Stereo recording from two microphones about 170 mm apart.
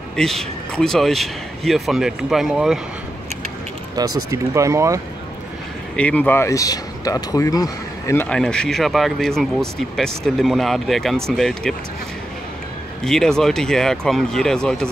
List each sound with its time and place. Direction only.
0.1 s speech: centre (ahead or behind)
3.9 s speech: 20° right (ahead or behind)
5.9 s speech: 10° left (ahead or behind)
13.0 s speech: 5° left (ahead or behind)